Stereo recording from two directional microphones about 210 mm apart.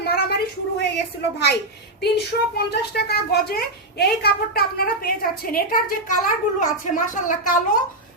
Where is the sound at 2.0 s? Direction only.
50° left (ahead or behind).